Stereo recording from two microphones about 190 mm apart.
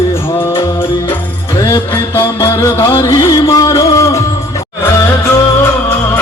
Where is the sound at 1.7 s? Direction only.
15° left (ahead or behind).